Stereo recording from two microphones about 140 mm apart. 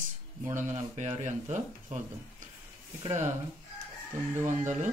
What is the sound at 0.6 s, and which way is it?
Speech, 55° right (ahead or behind).